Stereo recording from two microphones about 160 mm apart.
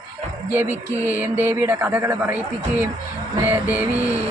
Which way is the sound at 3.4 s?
15° right (ahead or behind).